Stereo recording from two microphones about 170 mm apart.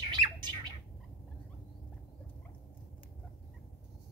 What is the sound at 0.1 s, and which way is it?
Squawk, 25° right (ahead or behind).